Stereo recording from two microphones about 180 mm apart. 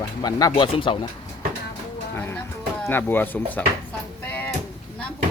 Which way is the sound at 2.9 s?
10° left (ahead or behind).